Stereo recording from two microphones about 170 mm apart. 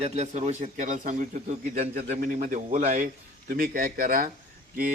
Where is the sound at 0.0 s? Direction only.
40° right (ahead or behind).